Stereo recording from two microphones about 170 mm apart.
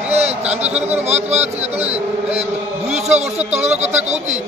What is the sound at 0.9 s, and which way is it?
Speech, 40° right (ahead or behind).